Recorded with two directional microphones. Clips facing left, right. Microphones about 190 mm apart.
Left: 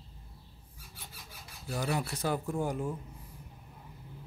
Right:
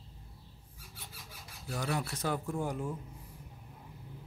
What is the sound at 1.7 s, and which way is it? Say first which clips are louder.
Speech: left 2 dB; 10° left (ahead or behind).